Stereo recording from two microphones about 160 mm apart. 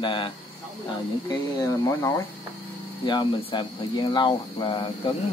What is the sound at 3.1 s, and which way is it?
Speech, 30° left (ahead or behind).